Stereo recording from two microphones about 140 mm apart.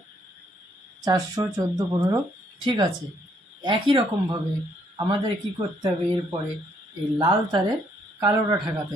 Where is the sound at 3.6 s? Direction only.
35° right (ahead or behind).